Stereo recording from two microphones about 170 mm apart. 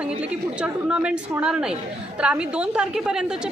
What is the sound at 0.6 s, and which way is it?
A woman's voice, 5° right (ahead or behind).